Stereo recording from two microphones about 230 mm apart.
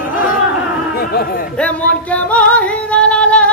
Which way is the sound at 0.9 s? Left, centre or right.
Left.